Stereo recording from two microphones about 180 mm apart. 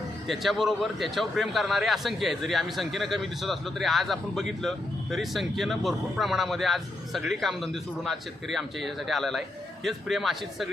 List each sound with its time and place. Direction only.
0.3 s a man's voice: centre (ahead or behind)